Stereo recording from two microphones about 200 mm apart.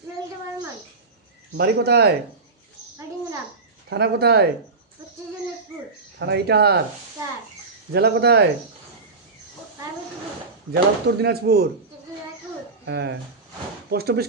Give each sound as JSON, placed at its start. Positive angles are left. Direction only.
{"t": 1.5, "sound": "speech", "side_deg": -55}
{"t": 3.8, "sound": "speech", "side_deg": -55}
{"t": 6.1, "sound": "speech", "side_deg": -55}
{"t": 7.9, "sound": "speech", "side_deg": -55}
{"t": 10.7, "sound": "speech", "side_deg": -55}
{"t": 12.8, "sound": "speech", "side_deg": -55}